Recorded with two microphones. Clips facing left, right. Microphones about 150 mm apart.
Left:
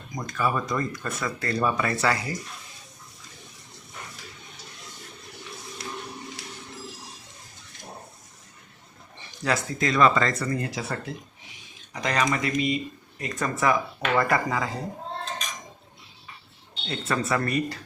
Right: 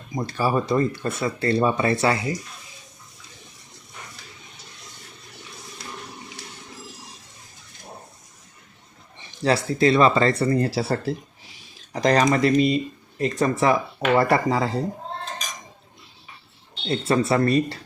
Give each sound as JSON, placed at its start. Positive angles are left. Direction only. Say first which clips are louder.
{"t": 0.1, "sound": "speech", "louder": "right 4 dB", "side_deg": -30}
{"t": 9.4, "sound": "speech", "louder": "right 7 dB", "side_deg": -30}
{"t": 16.8, "sound": "speech", "louder": "right 7 dB", "side_deg": -30}